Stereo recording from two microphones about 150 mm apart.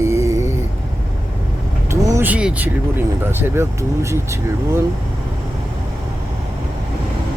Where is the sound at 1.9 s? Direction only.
20° right (ahead or behind).